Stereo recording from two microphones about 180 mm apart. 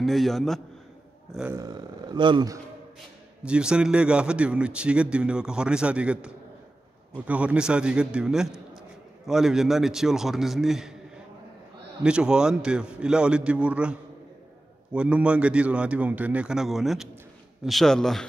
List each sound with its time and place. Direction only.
0.0 s a man's voice: centre (ahead or behind)
1.5 s speech: 20° right (ahead or behind)
3.4 s a man's voice: 5° right (ahead or behind)
12.0 s a man's voice: 5° right (ahead or behind)